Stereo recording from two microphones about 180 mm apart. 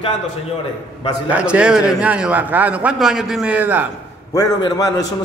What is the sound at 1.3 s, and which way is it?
A man's voice, 5° right (ahead or behind).